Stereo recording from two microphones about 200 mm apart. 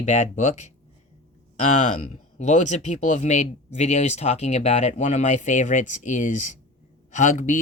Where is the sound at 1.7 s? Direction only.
35° left (ahead or behind).